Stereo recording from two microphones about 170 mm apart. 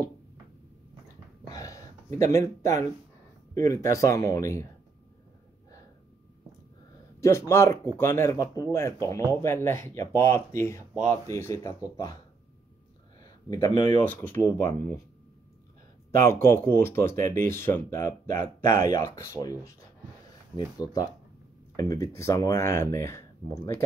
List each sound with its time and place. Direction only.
1.5 s a sound: 20° left (ahead or behind)
2.1 s speech: 20° left (ahead or behind)
7.2 s speech: 15° left (ahead or behind)
13.2 s speech: 20° left (ahead or behind)
14.0 s speech: 10° left (ahead or behind)
16.2 s speech: 15° left (ahead or behind)
21.7 s speech: 20° left (ahead or behind)